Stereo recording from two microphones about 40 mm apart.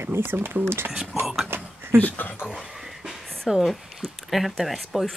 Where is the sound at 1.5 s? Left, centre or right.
Right.